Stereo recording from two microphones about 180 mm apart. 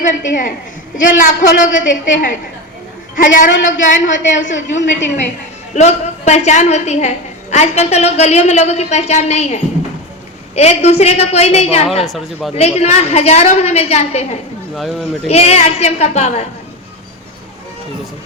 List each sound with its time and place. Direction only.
0.0 s a woman's voice: 45° left (ahead or behind)
5.7 s a woman's voice: 40° left (ahead or behind)
12.0 s speech: centre (ahead or behind)
12.8 s a woman's voice: 35° left (ahead or behind)
14.8 s speech: centre (ahead or behind)
15.3 s a woman's voice: 35° left (ahead or behind)